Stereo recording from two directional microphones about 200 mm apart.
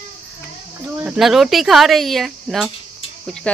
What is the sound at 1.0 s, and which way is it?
Speech, 5° right (ahead or behind).